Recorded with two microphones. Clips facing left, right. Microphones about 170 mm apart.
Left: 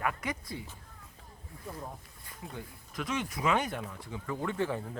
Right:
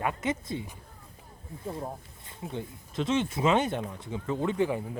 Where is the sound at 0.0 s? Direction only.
25° right (ahead or behind).